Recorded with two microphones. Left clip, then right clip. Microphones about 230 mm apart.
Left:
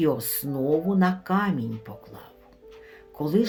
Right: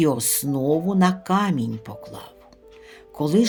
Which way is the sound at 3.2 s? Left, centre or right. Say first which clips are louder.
Right 4 dB; right.